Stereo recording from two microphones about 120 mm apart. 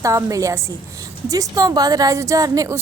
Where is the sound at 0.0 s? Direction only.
25° right (ahead or behind).